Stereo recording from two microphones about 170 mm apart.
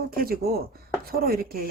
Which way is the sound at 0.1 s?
60° right (ahead or behind).